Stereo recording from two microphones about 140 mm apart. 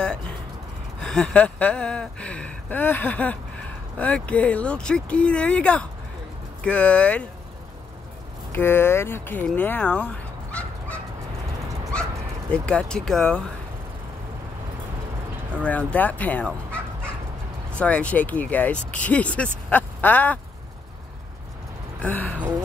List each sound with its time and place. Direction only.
1.0 s speech: 5° left (ahead or behind)
8.5 s speech: 15° left (ahead or behind)
11.9 s dog: 5° left (ahead or behind)
15.6 s speech: 10° left (ahead or behind)
17.7 s speech: 10° left (ahead or behind)
22.0 s a sound: 10° left (ahead or behind)